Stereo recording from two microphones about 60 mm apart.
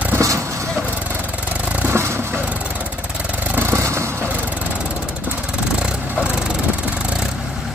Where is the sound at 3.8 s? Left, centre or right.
Right.